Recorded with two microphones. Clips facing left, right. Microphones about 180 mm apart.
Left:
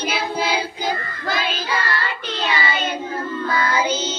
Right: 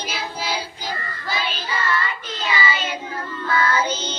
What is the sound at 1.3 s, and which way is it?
Child singing, 90° left.